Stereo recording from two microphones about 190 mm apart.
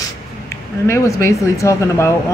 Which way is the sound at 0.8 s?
15° left (ahead or behind).